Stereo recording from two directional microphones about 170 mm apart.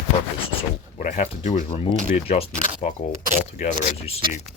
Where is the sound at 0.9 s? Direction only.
45° left (ahead or behind).